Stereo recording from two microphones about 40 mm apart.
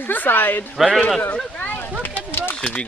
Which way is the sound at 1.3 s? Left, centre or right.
Left.